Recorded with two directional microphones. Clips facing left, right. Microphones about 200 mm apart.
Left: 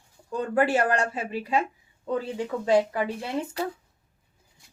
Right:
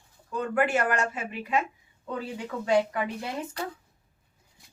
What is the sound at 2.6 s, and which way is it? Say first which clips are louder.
Speech: left 2 dB; 30° left (ahead or behind).